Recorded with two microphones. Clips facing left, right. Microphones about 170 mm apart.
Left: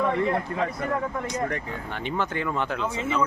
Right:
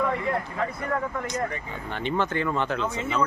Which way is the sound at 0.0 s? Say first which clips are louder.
Left 2 dB; 25° left (ahead or behind).